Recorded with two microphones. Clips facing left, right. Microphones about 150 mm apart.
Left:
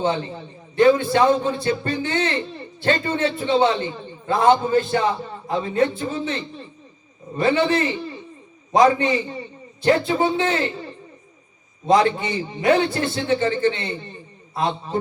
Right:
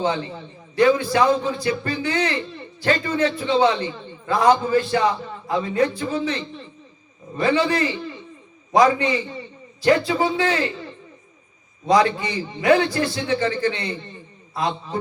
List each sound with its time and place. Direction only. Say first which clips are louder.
0.0 s a man's voice: left 1 dB; 30° left (ahead or behind)
11.9 s a man's voice: left 1 dB; 25° left (ahead or behind)